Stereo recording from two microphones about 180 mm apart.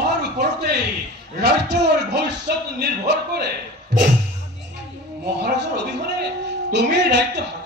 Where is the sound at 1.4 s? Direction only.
70° right (ahead or behind).